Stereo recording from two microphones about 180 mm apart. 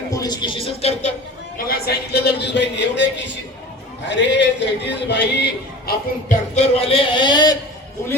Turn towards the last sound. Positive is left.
turn(degrees=25)  # may be behind; listen again after turning